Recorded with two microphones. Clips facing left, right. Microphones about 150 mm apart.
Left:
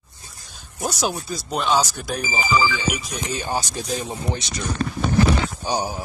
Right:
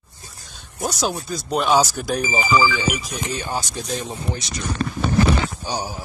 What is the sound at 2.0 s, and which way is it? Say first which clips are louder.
Speech: right 4 dB; centre (ahead or behind).